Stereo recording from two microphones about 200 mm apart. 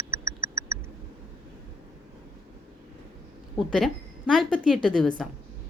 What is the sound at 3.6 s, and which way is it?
A woman's voice, centre (ahead or behind).